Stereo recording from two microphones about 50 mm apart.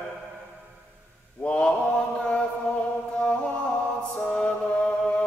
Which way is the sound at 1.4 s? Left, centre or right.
Left.